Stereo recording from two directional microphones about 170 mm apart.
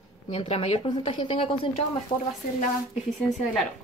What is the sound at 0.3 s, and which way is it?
A woman's voice, 35° left (ahead or behind).